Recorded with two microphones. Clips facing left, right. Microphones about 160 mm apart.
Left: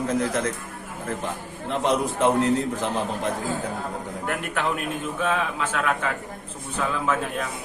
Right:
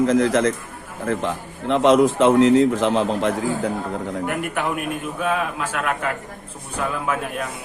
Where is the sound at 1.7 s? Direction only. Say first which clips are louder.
Right 9 dB; 90° right.